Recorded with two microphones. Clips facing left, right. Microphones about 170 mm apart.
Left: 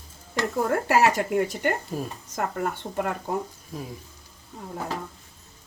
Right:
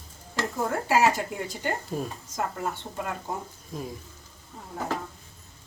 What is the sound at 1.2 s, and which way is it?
Speech, 60° left (ahead or behind).